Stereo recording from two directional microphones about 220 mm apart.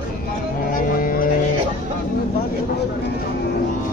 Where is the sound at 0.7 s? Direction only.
40° left (ahead or behind).